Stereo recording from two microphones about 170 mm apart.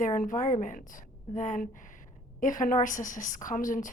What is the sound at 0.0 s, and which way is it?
A woman's voice, 50° left (ahead or behind).